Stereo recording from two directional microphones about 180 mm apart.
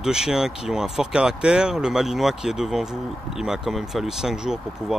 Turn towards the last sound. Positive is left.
turn(degrees=0)  # may be behind; listen again after turning